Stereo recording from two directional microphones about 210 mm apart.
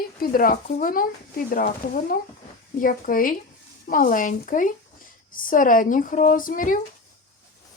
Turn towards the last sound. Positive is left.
turn(degrees=40)  # may be behind; listen again after turning